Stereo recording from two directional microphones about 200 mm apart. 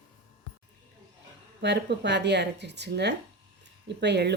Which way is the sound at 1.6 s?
60° right (ahead or behind).